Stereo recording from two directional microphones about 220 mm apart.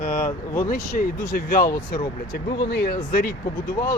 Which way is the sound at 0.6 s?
40° left (ahead or behind).